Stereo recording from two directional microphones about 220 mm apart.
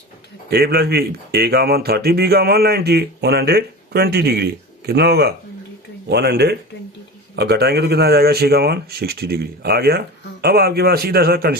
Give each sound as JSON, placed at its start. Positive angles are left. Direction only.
{"t": 0.5, "sound": "speech", "side_deg": -45}